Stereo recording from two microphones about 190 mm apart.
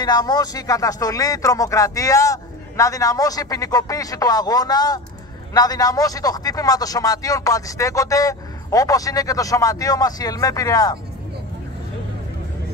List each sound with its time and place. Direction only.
0.0 s a man's voice: 20° left (ahead or behind)